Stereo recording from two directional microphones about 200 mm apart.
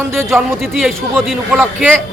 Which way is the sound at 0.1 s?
Centre (ahead or behind).